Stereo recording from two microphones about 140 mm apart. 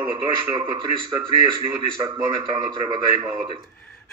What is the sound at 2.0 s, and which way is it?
Speech, 30° right (ahead or behind).